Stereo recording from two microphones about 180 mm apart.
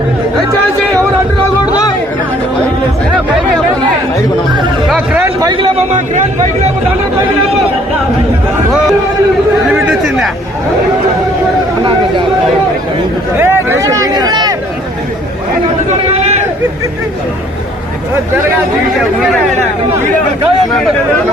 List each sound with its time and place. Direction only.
4.9 s a sound: 5° right (ahead or behind)
5.4 s speech: 20° right (ahead or behind)
9.7 s speech: centre (ahead or behind)
11.8 s speech: 30° right (ahead or behind)
13.4 s speech: 10° right (ahead or behind)